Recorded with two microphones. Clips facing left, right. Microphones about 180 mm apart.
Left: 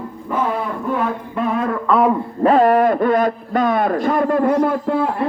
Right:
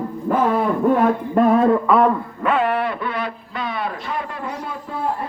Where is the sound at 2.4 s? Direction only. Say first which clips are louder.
Left 9 dB; 40° left (ahead or behind); by 5.3 s 70° left (ahead or behind).